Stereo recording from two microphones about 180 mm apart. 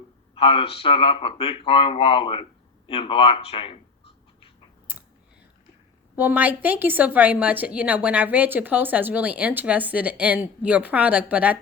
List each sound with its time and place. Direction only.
0.3 s speech: 30° left (ahead or behind)
6.1 s a woman's voice: 10° right (ahead or behind)